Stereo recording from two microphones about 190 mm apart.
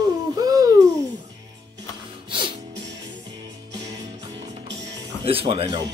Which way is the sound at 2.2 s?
25° right (ahead or behind).